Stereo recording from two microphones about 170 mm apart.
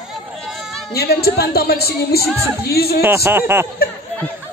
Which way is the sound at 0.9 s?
65° left (ahead or behind).